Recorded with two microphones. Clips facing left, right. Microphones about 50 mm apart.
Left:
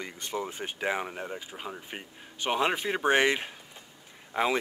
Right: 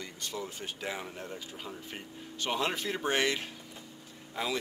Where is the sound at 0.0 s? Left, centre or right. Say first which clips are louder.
Left 5 dB; left.